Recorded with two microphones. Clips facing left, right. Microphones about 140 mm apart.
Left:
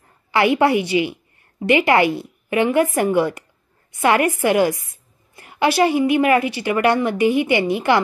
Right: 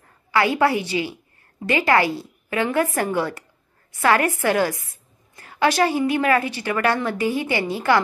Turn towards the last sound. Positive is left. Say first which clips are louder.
# left 4 dB
turn(degrees=15)  # may be behind; listen again after turning